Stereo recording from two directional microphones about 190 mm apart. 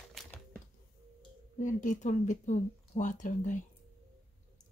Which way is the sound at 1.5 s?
40° left (ahead or behind).